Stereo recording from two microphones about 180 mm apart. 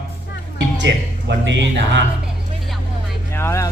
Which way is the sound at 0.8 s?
85° right.